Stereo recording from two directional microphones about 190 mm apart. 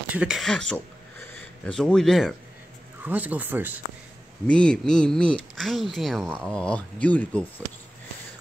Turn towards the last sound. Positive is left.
turn(degrees=5)  # may be behind; listen again after turning